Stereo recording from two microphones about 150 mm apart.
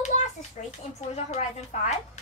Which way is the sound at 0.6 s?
50° left (ahead or behind).